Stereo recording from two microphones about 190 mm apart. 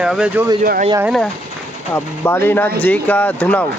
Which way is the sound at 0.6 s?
45° right (ahead or behind).